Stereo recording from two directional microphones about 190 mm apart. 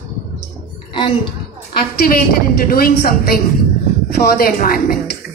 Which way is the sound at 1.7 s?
50° left (ahead or behind).